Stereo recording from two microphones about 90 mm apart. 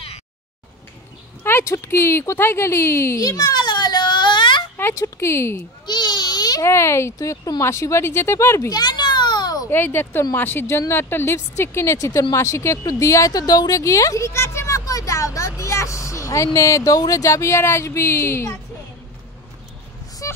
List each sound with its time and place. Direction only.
1.4 s speech: 25° left (ahead or behind); by 4.6 s 60° left (ahead or behind)
4.7 s speech: 30° left (ahead or behind)
5.9 s baby cry: 55° left (ahead or behind)
6.6 s speech: 30° left (ahead or behind)
7.6 s speech: 30° left (ahead or behind)
8.6 s children playing: 50° left (ahead or behind)
9.7 s speech: 25° left (ahead or behind)
20.2 s a sound: 35° left (ahead or behind)